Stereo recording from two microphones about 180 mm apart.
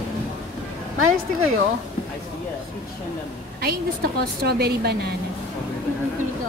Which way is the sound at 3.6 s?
60° right (ahead or behind).